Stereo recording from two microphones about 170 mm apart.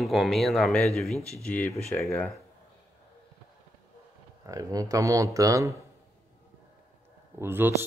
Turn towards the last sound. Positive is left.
turn(degrees=-15)  # may be behind; listen again after turning